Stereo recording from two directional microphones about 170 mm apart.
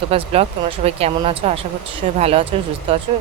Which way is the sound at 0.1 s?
35° right (ahead or behind).